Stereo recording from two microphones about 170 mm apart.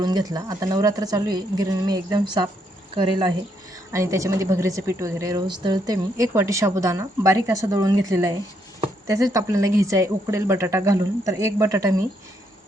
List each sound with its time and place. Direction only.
0.0 s a woman's voice: 25° right (ahead or behind)
3.9 s a woman's voice: 20° right (ahead or behind)